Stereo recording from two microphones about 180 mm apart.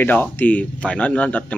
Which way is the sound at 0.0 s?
10° left (ahead or behind).